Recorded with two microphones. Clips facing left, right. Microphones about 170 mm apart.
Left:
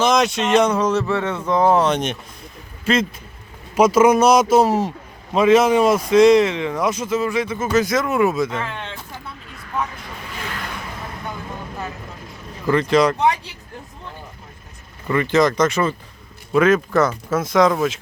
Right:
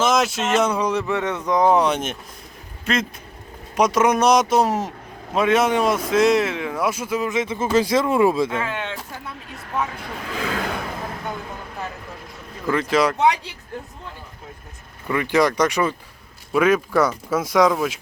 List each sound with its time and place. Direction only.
0.0 s a man's voice: 5° right (ahead or behind); by 8.4 s 30° right (ahead or behind)
8.4 s speech: 5° right (ahead or behind)
12.6 s speech: 5° right (ahead or behind)
15.0 s speech: 10° right (ahead or behind)